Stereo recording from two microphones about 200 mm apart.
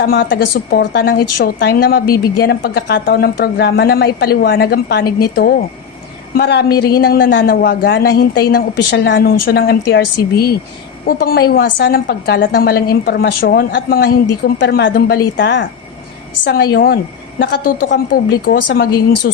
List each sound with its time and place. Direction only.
0.0 s a woman's voice: 50° left (ahead or behind)
9.1 s a woman's voice: 50° left (ahead or behind)
14.9 s a woman's voice: 50° left (ahead or behind)
15.4 s a woman's voice: 60° left (ahead or behind)